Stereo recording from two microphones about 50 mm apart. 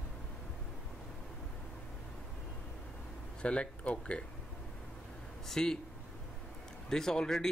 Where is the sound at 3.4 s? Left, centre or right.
Left.